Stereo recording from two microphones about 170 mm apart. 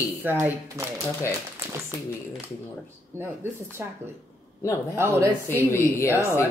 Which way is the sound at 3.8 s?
10° right (ahead or behind).